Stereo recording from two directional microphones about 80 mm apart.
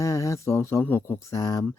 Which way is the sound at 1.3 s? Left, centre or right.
Left.